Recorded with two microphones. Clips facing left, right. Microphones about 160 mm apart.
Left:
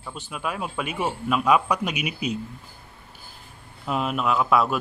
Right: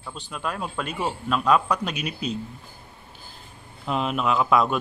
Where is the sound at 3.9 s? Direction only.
5° left (ahead or behind).